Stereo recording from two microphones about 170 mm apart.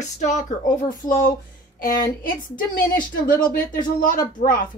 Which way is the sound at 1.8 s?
55° left (ahead or behind).